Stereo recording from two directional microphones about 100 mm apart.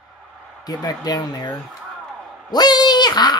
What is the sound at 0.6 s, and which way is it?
Speech, 40° left (ahead or behind).